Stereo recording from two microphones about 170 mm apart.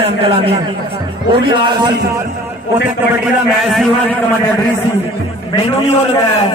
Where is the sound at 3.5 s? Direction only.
Centre (ahead or behind).